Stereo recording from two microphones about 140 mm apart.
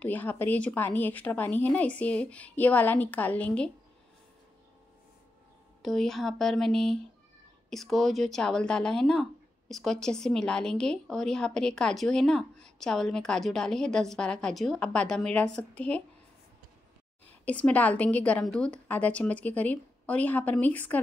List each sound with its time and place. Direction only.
0.0 s a woman's voice: 10° left (ahead or behind)
5.8 s speech: centre (ahead or behind)
17.5 s a woman's voice: 10° left (ahead or behind)